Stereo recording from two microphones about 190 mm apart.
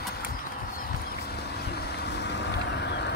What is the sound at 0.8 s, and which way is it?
Boat, 55° left (ahead or behind).